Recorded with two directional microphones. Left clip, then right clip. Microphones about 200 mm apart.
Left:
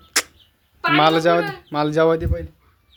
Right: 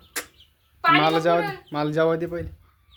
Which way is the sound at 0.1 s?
30° left (ahead or behind).